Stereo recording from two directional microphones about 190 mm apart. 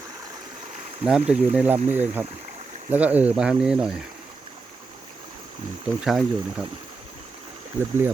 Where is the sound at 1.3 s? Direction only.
5° right (ahead or behind).